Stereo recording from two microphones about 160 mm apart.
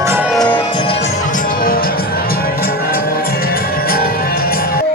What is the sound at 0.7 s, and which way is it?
Music, 30° left (ahead or behind).